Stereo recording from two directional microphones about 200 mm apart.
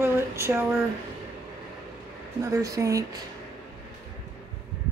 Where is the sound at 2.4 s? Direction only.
15° right (ahead or behind).